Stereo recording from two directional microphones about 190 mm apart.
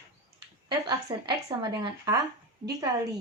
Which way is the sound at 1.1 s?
25° right (ahead or behind).